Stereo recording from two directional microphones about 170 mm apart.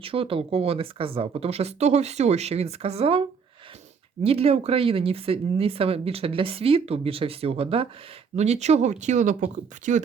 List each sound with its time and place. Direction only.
0.0 s speech: 35° right (ahead or behind)